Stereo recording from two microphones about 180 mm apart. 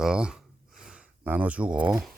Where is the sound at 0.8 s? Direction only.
5° right (ahead or behind).